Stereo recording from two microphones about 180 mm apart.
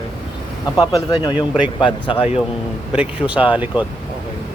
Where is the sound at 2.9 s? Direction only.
5° right (ahead or behind).